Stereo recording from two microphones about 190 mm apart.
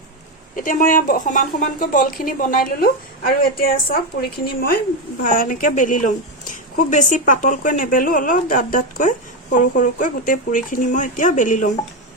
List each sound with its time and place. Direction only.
0.5 s a woman's voice: 45° left (ahead or behind)